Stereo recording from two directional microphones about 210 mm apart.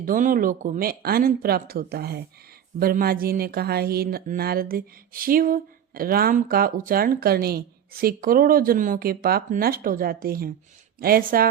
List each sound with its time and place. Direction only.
0.0 s speech: 40° right (ahead or behind)